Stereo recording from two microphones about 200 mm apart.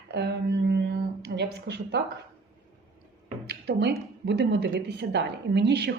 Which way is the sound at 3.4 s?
55° right (ahead or behind).